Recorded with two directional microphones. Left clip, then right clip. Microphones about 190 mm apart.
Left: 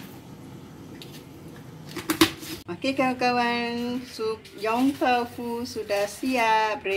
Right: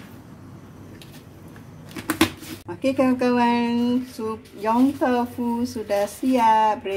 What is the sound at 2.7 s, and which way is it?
A woman's voice, 35° right (ahead or behind).